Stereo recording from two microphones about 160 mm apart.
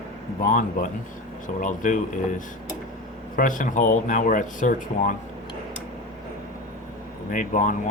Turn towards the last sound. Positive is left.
turn(degrees=55)  # may be behind; listen again after turning